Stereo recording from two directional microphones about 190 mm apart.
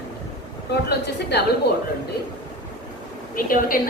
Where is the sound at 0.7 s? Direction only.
60° left (ahead or behind).